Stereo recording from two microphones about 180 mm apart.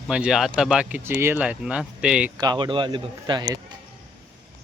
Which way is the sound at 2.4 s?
25° right (ahead or behind).